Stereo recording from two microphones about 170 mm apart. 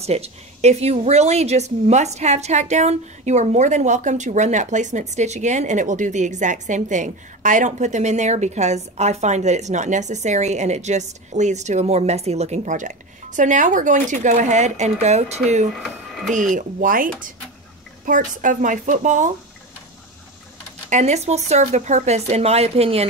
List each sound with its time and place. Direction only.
0.0 s a woman's voice: 40° right (ahead or behind)
15.8 s speech: centre (ahead or behind)
16.3 s a woman's voice: 50° right (ahead or behind)
20.9 s speech: 40° right (ahead or behind)